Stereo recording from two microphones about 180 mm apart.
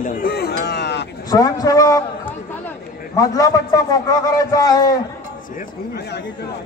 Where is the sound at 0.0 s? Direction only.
55° left (ahead or behind); by 1.0 s 70° left (ahead or behind).